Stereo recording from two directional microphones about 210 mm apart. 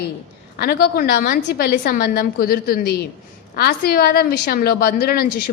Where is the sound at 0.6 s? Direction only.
50° left (ahead or behind).